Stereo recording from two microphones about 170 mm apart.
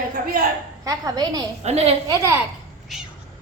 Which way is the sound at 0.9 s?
20° right (ahead or behind).